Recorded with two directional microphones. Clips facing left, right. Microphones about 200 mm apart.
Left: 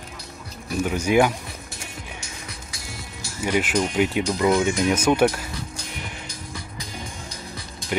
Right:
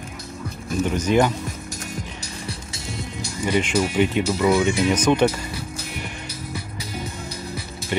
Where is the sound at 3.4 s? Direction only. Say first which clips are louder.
Right 1 dB; 5° left (ahead or behind).